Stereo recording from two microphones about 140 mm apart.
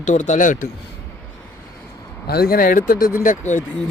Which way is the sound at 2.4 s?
90° left.